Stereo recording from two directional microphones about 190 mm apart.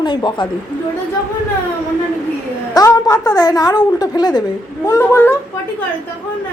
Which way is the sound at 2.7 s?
15° left (ahead or behind).